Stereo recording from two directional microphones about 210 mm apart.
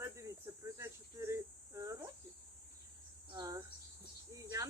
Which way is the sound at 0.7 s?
10° right (ahead or behind).